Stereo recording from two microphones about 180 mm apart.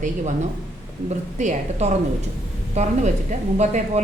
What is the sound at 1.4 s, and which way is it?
A woman's voice, 40° right (ahead or behind).